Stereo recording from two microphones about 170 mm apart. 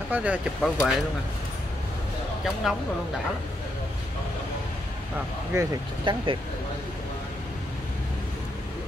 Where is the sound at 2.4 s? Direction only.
Centre (ahead or behind).